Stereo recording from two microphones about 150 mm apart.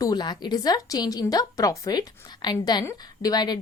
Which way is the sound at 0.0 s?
25° left (ahead or behind).